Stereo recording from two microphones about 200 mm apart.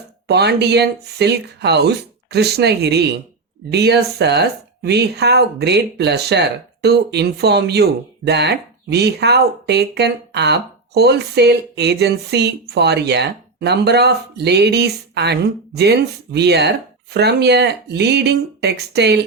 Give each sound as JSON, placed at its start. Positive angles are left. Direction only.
{"t": 0.3, "sound": "speech", "side_deg": -55}